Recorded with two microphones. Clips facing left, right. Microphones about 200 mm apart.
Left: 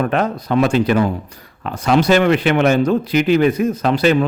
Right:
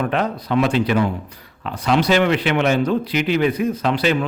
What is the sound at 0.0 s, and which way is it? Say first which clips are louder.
Speech: left 3 dB; 45° left (ahead or behind).